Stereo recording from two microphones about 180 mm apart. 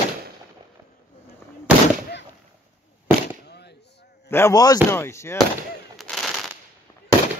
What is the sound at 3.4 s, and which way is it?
Fireworks, 65° left (ahead or behind).